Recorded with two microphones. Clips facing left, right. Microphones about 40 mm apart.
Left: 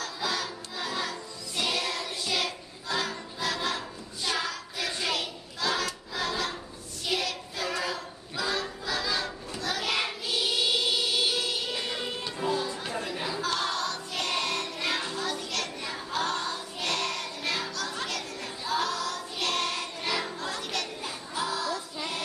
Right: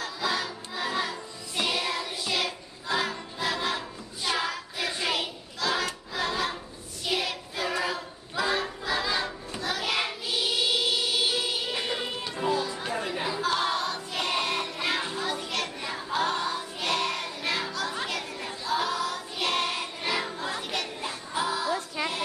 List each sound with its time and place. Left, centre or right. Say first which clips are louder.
0.0 s music: right 2 dB; centre
1.6 s child singing: right 2 dB; centre
5.6 s crowd: right 1 dB; centre
6.1 s a sound: right 2 dB; centre
7.1 s child singing: right 1 dB; centre
13.0 s a sound: right 3 dB; centre
18.7 s music: right 2 dB; centre